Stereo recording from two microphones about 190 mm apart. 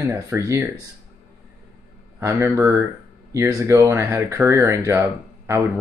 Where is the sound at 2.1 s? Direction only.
15° right (ahead or behind).